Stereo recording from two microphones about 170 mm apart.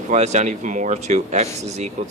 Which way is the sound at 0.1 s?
45° right (ahead or behind).